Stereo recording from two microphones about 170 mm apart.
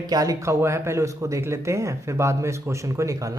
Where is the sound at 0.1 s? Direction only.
20° right (ahead or behind).